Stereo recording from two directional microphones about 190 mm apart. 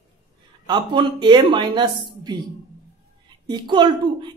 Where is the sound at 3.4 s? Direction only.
25° right (ahead or behind).